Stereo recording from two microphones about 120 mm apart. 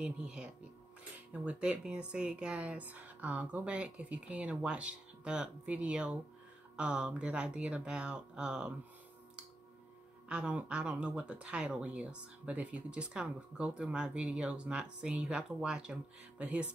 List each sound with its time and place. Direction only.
0.0 s speech: 5° right (ahead or behind)
10.2 s speech: 10° right (ahead or behind)